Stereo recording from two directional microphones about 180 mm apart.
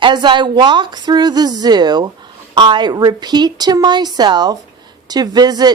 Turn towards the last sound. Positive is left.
turn(degrees=-20)  # may be behind; listen again after turning